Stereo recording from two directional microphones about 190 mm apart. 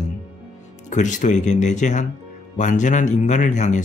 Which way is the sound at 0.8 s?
40° left (ahead or behind).